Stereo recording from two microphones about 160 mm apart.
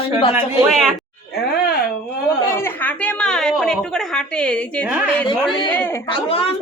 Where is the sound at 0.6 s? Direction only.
Centre (ahead or behind).